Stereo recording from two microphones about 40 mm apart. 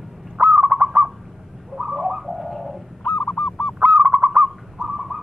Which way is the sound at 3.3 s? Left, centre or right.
Left.